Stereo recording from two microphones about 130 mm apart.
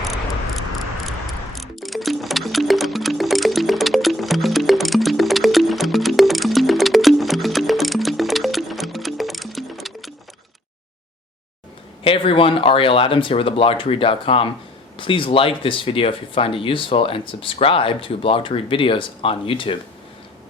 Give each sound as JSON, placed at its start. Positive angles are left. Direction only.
{"t": 0.0, "sound": "a sound", "side_deg": 0}
{"t": 1.5, "sound": "music", "side_deg": 0}
{"t": 12.0, "sound": "speech", "side_deg": 45}